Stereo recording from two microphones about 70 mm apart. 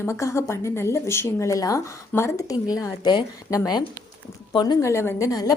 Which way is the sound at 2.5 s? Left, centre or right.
Left.